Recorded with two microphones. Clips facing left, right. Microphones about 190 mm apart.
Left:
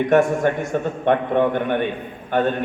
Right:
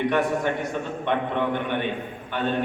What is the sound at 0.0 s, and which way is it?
A man's voice, 45° left (ahead or behind).